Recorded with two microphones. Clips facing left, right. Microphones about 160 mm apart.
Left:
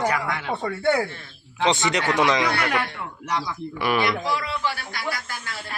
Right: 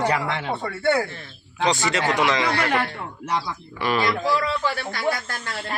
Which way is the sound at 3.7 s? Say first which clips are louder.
Even; 10° left (ahead or behind).